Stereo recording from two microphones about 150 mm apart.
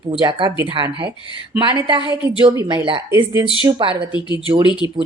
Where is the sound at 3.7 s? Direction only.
35° right (ahead or behind).